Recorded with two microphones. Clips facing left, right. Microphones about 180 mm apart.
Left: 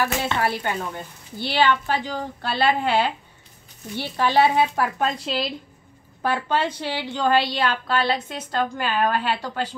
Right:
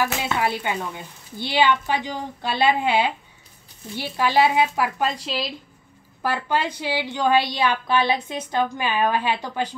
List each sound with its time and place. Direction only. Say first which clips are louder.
0.0 s a woman's voice: even; 15° right (ahead or behind)